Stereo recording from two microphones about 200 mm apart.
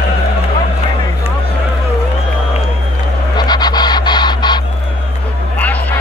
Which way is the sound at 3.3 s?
20° left (ahead or behind).